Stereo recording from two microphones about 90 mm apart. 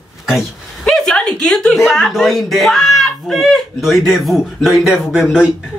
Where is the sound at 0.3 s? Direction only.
Centre (ahead or behind).